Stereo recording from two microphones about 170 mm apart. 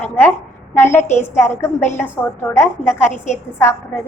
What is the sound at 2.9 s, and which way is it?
Speech, 45° left (ahead or behind).